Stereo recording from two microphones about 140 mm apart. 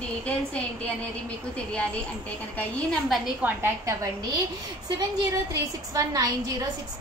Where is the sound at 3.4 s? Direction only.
20° right (ahead or behind).